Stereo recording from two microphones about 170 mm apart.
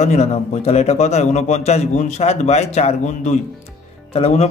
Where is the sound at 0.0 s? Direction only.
40° left (ahead or behind).